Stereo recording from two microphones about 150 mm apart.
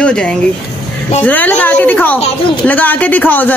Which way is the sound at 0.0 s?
5° left (ahead or behind).